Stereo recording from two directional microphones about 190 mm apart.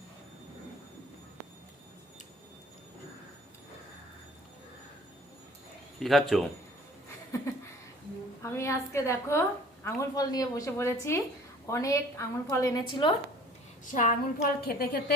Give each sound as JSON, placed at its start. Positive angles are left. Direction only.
{"t": 6.0, "sound": "a man's voice", "side_deg": 0}
{"t": 7.3, "sound": "a sound", "side_deg": 15}
{"t": 8.4, "sound": "a woman's voice", "side_deg": 15}
{"t": 13.8, "sound": "a woman's voice", "side_deg": 40}
{"t": 14.6, "sound": "a woman's voice", "side_deg": 55}